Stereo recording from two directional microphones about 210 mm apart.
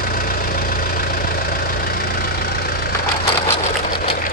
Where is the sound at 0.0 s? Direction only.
45° left (ahead or behind).